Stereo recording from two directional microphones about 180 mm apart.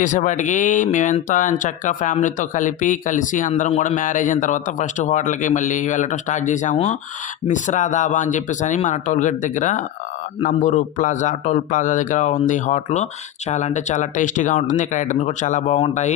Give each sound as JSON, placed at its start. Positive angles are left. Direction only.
{"t": 0.0, "sound": "speech", "side_deg": 45}